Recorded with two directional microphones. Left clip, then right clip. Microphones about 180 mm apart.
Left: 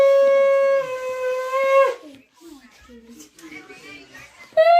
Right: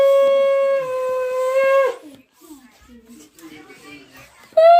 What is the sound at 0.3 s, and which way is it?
Plucked string instrument, 50° left (ahead or behind).